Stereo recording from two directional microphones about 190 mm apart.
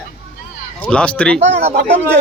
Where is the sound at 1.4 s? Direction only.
35° right (ahead or behind).